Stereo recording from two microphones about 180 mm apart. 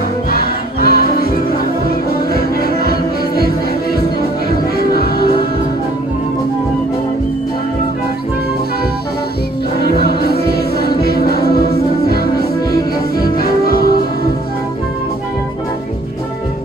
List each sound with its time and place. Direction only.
0.3 s crowd: 55° left (ahead or behind)
4.8 s music: 60° left (ahead or behind)
10.8 s music: 60° left (ahead or behind)